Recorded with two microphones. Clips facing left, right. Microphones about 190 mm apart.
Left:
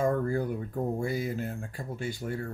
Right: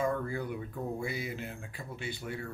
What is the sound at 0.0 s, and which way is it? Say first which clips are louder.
Speech: left 5 dB; 45° left (ahead or behind).